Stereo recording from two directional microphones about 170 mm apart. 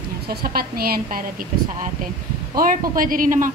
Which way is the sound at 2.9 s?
55° right (ahead or behind).